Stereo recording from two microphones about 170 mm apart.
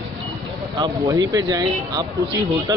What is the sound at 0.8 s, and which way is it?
Speech, 20° right (ahead or behind).